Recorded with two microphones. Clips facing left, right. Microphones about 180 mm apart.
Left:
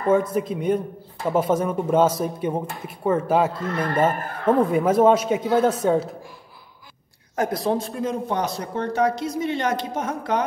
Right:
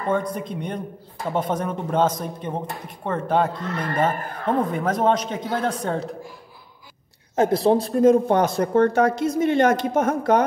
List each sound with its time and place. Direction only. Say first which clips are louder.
0.1 s a man's voice: left 5 dB; 5° left (ahead or behind)
7.3 s speech: right 5 dB; 25° right (ahead or behind); by 10.4 s 50° right (ahead or behind)